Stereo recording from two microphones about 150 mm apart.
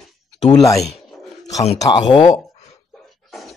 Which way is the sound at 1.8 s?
30° left (ahead or behind).